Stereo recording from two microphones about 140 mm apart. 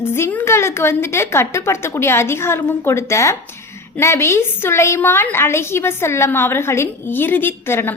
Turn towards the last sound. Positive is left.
turn(degrees=15)  # may be behind; listen again after turning